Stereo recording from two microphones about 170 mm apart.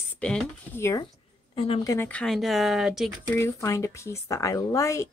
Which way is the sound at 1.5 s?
30° left (ahead or behind).